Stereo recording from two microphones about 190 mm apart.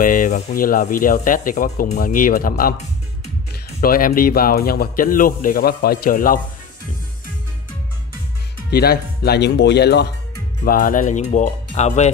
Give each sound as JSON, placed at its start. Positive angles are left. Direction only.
{"t": 0.0, "sound": "speech", "side_deg": 45}
{"t": 3.8, "sound": "speech", "side_deg": 50}
{"t": 8.6, "sound": "speech", "side_deg": 55}
{"t": 10.6, "sound": "speech", "side_deg": 50}